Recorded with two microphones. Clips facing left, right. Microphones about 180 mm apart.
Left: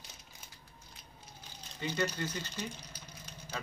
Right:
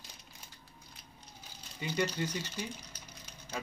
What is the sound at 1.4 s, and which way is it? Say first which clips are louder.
Speech: left 2 dB; 10° right (ahead or behind).